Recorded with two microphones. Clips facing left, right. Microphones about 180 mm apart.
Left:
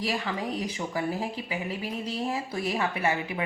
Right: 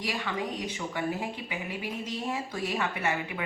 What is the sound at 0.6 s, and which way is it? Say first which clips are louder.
Speech: left 2 dB; 35° left (ahead or behind).